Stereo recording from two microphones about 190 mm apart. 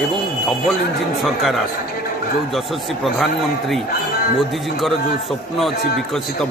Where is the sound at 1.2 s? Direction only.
Centre (ahead or behind).